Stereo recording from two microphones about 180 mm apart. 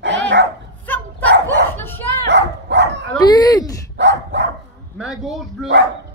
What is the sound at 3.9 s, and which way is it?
Speech, 75° right (ahead or behind).